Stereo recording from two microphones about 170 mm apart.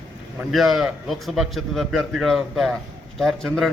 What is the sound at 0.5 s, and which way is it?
Speech, centre (ahead or behind).